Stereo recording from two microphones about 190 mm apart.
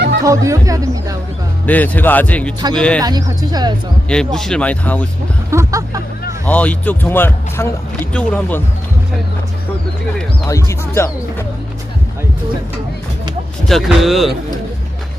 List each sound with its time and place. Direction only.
0.3 s speech: 15° right (ahead or behind)
1.6 s speech: 10° left (ahead or behind)
3.0 s speech: 20° right (ahead or behind)
4.1 s speech: 5° left (ahead or behind)
5.5 s speech: 15° right (ahead or behind)
6.4 s speech: 5° left (ahead or behind)
10.5 s speech: 15° left (ahead or behind)
13.7 s speech: centre (ahead or behind)